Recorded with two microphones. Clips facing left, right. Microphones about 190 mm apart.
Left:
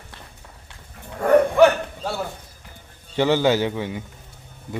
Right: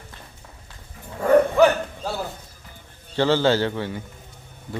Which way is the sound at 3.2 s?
15° left (ahead or behind).